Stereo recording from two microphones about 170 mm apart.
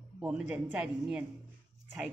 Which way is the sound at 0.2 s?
5° right (ahead or behind).